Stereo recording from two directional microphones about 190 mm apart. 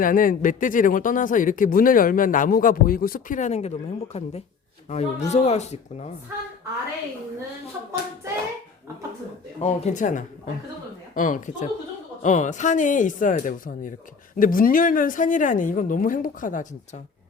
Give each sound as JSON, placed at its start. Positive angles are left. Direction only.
{"t": 0.0, "sound": "speech", "side_deg": 45}
{"t": 9.6, "sound": "speech", "side_deg": 35}